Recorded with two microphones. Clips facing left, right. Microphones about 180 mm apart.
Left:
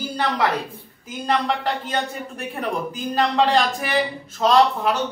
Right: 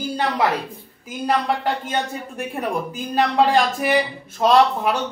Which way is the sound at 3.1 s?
10° right (ahead or behind).